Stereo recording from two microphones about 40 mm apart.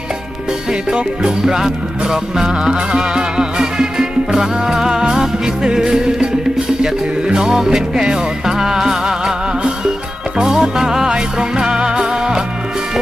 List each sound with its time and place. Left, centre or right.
0.7 s music: right
7.3 s music: centre